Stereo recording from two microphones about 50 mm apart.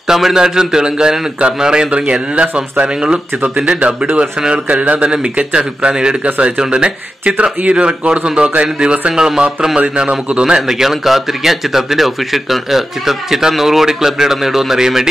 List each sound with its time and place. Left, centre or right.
0.1 s a man's voice: centre